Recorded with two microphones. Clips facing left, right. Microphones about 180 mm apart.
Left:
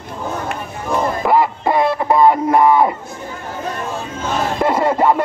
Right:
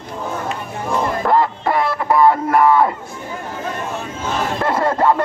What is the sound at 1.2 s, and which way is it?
Music, 10° left (ahead or behind).